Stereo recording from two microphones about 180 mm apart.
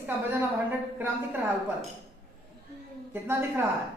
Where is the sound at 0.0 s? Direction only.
10° right (ahead or behind).